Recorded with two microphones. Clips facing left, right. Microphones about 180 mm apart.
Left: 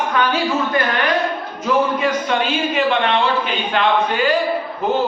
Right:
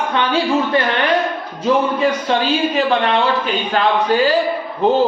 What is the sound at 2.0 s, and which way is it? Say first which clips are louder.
A man's voice: right 2 dB; 35° right (ahead or behind).